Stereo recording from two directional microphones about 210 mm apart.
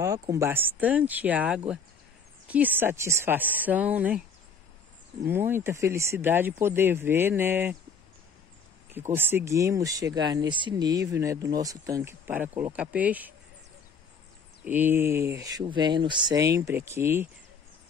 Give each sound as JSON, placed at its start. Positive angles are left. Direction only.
{"t": 0.0, "sound": "speech", "side_deg": -15}
{"t": 5.2, "sound": "speech", "side_deg": -10}
{"t": 8.9, "sound": "speech", "side_deg": -10}
{"t": 14.6, "sound": "speech", "side_deg": -10}